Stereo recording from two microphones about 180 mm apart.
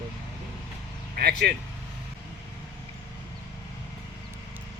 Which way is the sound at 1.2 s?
55° right (ahead or behind).